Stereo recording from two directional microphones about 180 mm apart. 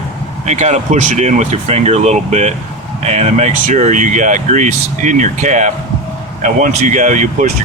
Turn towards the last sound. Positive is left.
turn(degrees=-45)  # may be behind; listen again after turning